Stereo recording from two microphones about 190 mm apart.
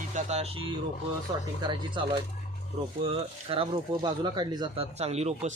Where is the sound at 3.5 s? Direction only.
25° right (ahead or behind).